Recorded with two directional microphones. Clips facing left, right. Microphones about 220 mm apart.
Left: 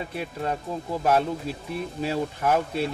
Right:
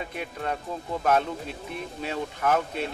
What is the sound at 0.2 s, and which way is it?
Speech, 5° left (ahead or behind).